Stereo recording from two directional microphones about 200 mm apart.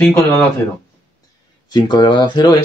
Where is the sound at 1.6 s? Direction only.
20° left (ahead or behind).